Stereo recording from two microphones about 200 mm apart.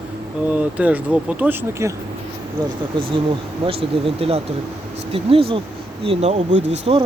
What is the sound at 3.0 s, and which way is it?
Speech, 25° right (ahead or behind).